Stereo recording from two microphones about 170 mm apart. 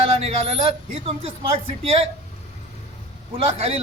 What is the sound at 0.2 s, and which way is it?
A man's voice, 35° right (ahead or behind).